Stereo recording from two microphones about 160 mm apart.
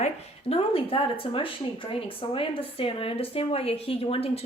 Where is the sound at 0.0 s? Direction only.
40° left (ahead or behind).